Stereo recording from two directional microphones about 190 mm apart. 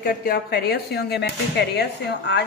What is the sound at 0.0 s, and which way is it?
A woman's voice, 50° left (ahead or behind).